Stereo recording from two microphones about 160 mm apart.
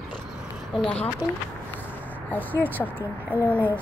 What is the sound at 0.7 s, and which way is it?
Speech, 10° left (ahead or behind).